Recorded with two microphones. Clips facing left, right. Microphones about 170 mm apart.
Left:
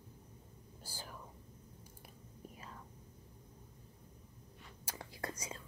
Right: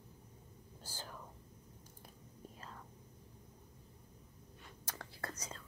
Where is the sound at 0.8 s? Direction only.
10° left (ahead or behind).